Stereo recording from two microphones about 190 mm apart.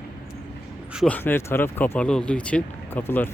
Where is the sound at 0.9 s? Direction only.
5° left (ahead or behind).